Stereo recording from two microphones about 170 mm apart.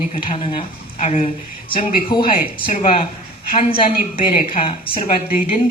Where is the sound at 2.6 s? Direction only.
45° left (ahead or behind).